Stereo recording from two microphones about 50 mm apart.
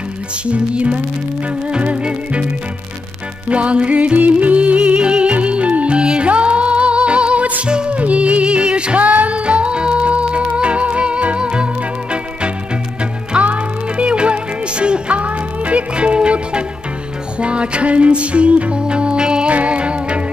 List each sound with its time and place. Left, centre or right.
0.5 s music: right
3.4 s music: right